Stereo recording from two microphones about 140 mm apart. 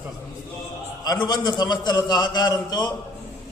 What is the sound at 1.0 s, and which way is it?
A man's voice, 30° left (ahead or behind).